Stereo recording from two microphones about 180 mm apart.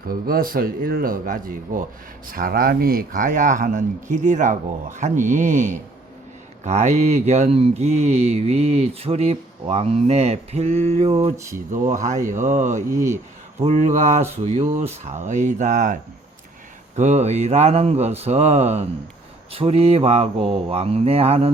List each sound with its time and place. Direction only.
0.0 s speech: 55° right (ahead or behind); by 11.3 s 35° right (ahead or behind)
12.3 s speech: 45° right (ahead or behind)
12.9 s a man's voice: 15° right (ahead or behind)
13.6 s speech: 40° right (ahead or behind)
17.0 s speech: 40° right (ahead or behind)